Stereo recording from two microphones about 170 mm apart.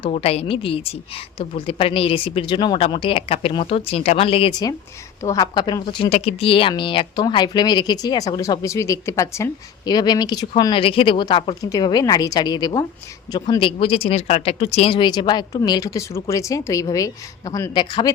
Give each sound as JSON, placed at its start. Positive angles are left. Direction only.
{"t": 0.0, "sound": "a woman's voice", "side_deg": 35}
{"t": 5.2, "sound": "speech", "side_deg": 20}